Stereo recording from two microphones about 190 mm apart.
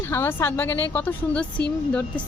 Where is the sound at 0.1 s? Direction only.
10° left (ahead or behind).